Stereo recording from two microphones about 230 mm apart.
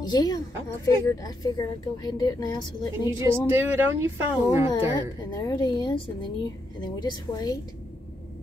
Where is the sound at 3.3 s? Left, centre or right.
Centre.